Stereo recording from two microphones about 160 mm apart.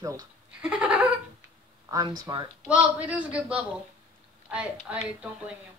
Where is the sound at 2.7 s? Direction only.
10° right (ahead or behind).